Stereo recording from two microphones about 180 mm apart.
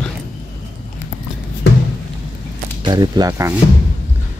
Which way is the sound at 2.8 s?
25° right (ahead or behind).